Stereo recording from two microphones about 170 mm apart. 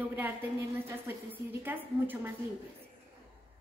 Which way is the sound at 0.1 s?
10° right (ahead or behind).